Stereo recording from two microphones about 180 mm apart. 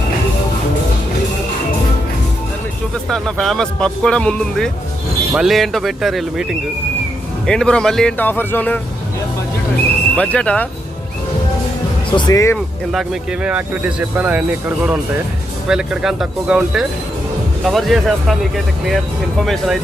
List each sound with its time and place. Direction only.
3.1 s speech: centre (ahead or behind)
10.2 s speech: 5° left (ahead or behind)
12.1 s speech: 20° left (ahead or behind)
12.9 s speech: 5° right (ahead or behind)
15.7 s speech: 5° right (ahead or behind)